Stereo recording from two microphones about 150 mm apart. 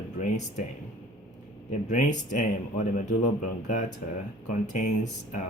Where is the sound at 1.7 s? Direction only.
55° left (ahead or behind).